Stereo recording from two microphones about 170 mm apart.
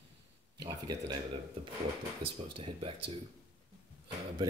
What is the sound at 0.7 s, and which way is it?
Speech, 20° right (ahead or behind).